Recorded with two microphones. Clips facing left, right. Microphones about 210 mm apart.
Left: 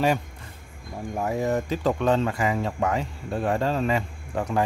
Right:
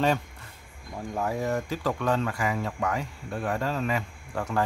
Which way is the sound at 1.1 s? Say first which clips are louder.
Left 3 dB; 20° left (ahead or behind).